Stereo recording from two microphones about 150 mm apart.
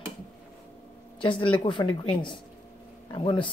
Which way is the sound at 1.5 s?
35° left (ahead or behind).